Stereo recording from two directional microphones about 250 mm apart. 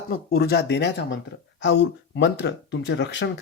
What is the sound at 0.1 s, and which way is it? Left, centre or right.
Speech, left.